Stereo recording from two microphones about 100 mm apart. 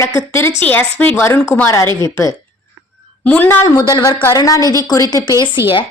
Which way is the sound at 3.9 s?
35° left (ahead or behind).